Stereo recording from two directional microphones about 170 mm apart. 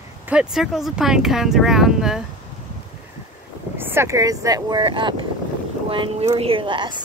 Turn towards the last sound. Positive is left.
turn(degrees=-25)  # may be behind; listen again after turning